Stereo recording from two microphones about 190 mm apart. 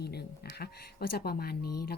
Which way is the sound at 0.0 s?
60° left (ahead or behind).